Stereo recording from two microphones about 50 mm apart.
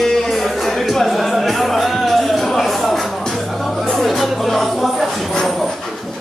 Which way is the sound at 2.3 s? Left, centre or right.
Centre.